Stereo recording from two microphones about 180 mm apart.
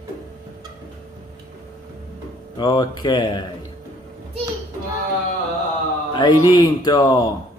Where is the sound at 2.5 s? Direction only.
25° left (ahead or behind).